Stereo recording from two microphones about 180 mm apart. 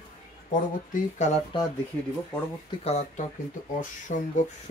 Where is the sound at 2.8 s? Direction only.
35° left (ahead or behind).